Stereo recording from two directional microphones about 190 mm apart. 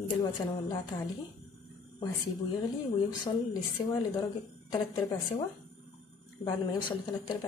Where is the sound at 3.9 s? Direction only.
20° left (ahead or behind).